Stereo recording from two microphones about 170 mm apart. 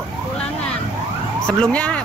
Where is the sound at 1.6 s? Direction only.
5° left (ahead or behind).